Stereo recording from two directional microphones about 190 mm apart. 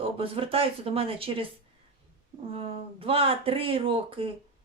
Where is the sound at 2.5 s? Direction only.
30° right (ahead or behind).